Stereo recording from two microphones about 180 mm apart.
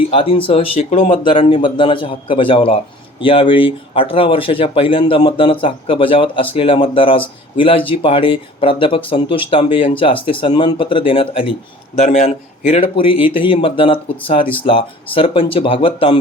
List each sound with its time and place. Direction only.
0.1 s speech: 30° left (ahead or behind)
1.2 s speech: 30° left (ahead or behind)
11.9 s speech: 40° left (ahead or behind)